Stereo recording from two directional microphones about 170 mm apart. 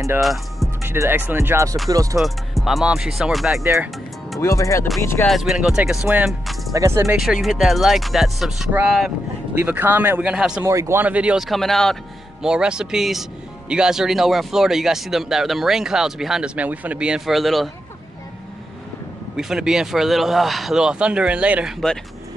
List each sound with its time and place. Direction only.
0.2 s speech: centre (ahead or behind)
0.8 s speech: 15° right (ahead or behind)
2.1 s speech: centre (ahead or behind)
3.6 s speech: 15° right (ahead or behind)
4.4 s speech: 20° left (ahead or behind)
5.0 s music: 15° left (ahead or behind)
5.3 s speech: centre (ahead or behind)
6.7 s speech: 20° right (ahead or behind)
7.4 s speech: centre (ahead or behind)
10.6 s speech: 15° right (ahead or behind); by 17.6 s centre (ahead or behind)
19.3 s speech: 5° right (ahead or behind)